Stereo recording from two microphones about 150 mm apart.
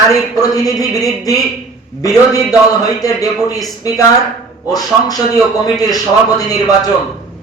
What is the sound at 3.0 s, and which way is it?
Speech, 25° left (ahead or behind).